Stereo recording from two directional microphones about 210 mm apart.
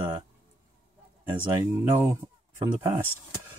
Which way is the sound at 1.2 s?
10° right (ahead or behind).